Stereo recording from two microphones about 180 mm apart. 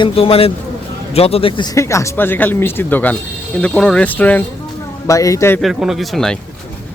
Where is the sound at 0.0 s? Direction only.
30° left (ahead or behind); by 5.5 s 15° left (ahead or behind).